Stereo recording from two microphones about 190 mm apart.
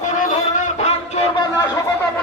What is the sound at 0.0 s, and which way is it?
Music, 40° left (ahead or behind).